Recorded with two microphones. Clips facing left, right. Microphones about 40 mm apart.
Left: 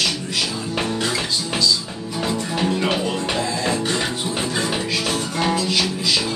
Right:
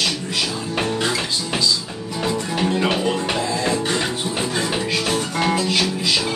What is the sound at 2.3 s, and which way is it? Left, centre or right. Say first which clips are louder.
Music: right 1 dB; centre.